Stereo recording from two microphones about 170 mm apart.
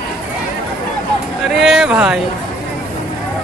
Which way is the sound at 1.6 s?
Centre (ahead or behind).